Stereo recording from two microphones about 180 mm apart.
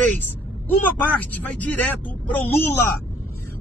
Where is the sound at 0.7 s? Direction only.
10° left (ahead or behind).